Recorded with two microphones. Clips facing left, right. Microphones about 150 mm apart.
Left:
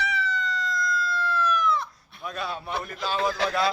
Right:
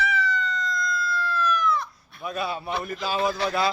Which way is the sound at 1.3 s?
20° left (ahead or behind).